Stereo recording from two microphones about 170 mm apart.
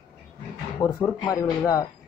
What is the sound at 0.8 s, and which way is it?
Speech, 20° left (ahead or behind).